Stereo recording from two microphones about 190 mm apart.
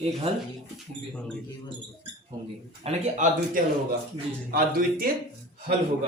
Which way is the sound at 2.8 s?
40° right (ahead or behind).